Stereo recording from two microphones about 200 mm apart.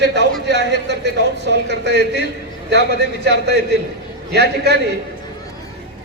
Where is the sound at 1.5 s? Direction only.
60° right (ahead or behind).